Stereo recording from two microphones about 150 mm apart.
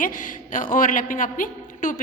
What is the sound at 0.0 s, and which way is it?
A woman's voice, 60° left (ahead or behind).